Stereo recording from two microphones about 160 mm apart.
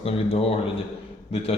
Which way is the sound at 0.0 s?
35° left (ahead or behind).